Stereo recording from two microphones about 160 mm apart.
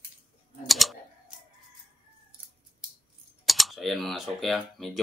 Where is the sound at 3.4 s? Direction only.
Centre (ahead or behind).